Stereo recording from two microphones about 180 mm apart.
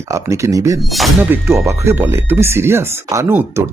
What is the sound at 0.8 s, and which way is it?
Speech, centre (ahead or behind).